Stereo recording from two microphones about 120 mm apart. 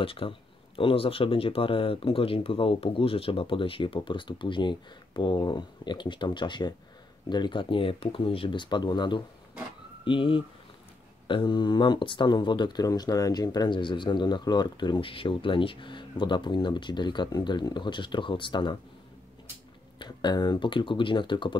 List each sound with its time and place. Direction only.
0.0 s speech: 50° left (ahead or behind)
20.0 s speech: 40° left (ahead or behind)